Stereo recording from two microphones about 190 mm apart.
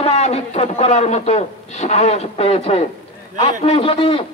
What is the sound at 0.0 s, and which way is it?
A man's voice, 35° left (ahead or behind).